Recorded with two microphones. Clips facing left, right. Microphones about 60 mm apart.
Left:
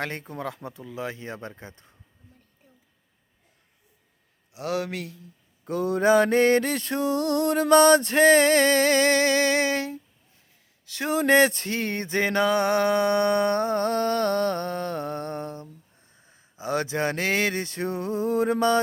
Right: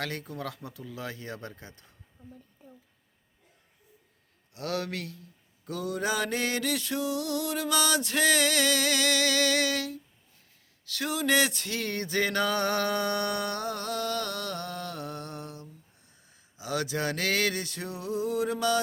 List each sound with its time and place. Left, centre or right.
0.0 s speech: left
4.5 s speech: centre
5.6 s music: left
10.8 s speech: left
11.1 s music: left
16.1 s speech: left